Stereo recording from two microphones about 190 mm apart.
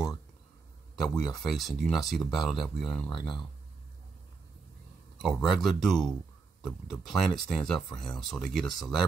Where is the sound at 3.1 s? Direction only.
25° left (ahead or behind).